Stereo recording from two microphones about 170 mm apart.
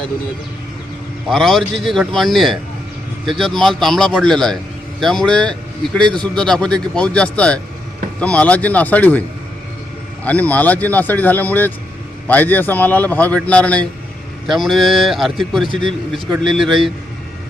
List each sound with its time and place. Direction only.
1.3 s a man's voice: centre (ahead or behind)
10.2 s a man's voice: 10° left (ahead or behind)
15.6 s a man's voice: 30° right (ahead or behind)
16.4 s a man's voice: centre (ahead or behind)